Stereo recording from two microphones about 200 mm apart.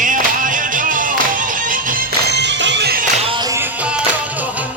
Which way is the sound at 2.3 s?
60° right (ahead or behind).